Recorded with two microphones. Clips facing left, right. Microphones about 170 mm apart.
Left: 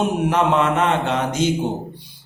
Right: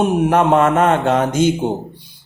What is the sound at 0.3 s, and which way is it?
Speech, 50° right (ahead or behind).